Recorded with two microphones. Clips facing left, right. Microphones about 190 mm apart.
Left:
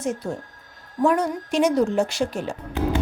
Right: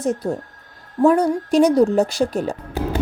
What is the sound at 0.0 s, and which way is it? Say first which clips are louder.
Speech: right 5 dB; 35° right (ahead or behind).